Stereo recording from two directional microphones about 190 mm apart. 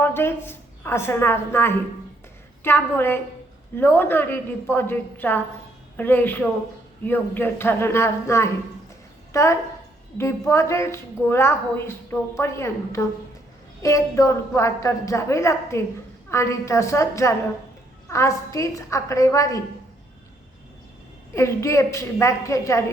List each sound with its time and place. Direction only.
0.0 s a woman's voice: 10° left (ahead or behind)
21.3 s a woman's voice: 15° left (ahead or behind)